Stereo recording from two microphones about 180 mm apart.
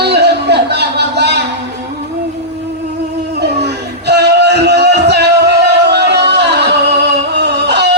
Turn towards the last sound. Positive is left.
turn(degrees=-70)  # may be behind; listen again after turning